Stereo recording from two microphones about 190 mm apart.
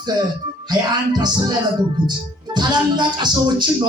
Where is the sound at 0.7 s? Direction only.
20° right (ahead or behind).